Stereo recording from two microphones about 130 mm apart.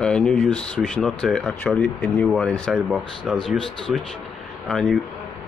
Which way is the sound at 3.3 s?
5° right (ahead or behind).